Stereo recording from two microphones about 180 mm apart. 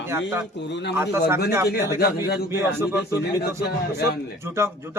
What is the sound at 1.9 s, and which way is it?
Speech, 60° left (ahead or behind).